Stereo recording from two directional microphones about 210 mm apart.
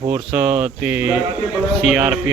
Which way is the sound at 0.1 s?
5° right (ahead or behind).